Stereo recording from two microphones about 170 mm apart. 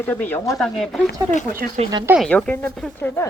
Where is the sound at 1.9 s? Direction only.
15° right (ahead or behind).